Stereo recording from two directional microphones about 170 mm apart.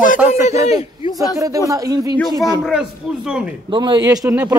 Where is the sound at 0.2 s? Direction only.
5° right (ahead or behind).